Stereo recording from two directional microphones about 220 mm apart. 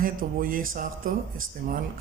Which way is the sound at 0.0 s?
40° right (ahead or behind).